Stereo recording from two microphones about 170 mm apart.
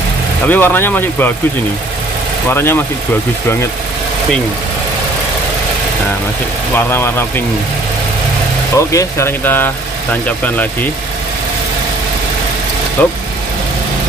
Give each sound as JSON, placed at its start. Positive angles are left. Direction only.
{"t": 0.5, "sound": "speech", "side_deg": 10}
{"t": 2.5, "sound": "speech", "side_deg": 15}
{"t": 6.7, "sound": "speech", "side_deg": 15}
{"t": 8.7, "sound": "speech", "side_deg": 15}
{"t": 13.0, "sound": "speech", "side_deg": 10}